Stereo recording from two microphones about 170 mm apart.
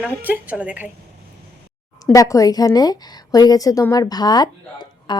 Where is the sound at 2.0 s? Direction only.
20° left (ahead or behind).